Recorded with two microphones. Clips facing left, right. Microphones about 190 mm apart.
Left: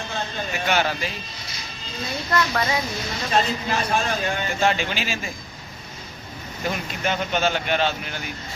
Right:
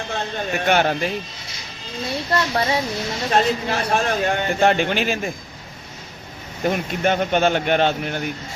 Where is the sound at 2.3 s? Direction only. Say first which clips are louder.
Right 2 dB; 30° right (ahead or behind).